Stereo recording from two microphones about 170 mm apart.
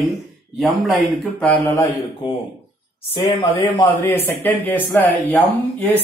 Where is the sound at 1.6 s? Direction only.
15° left (ahead or behind).